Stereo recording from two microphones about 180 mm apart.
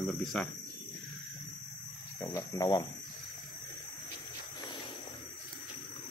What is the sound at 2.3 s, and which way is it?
Speech, 20° left (ahead or behind).